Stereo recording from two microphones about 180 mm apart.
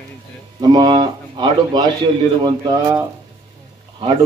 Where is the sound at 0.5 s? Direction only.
25° right (ahead or behind).